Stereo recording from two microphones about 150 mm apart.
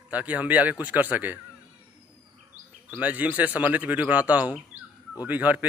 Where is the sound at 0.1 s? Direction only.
10° right (ahead or behind).